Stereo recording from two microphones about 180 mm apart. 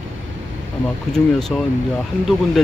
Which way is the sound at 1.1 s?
Centre (ahead or behind).